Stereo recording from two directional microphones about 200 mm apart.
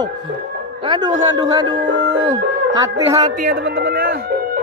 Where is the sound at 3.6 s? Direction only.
50° right (ahead or behind).